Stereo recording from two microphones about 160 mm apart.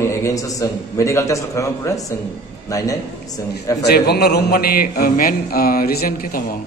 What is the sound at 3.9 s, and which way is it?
A man's voice, 85° left.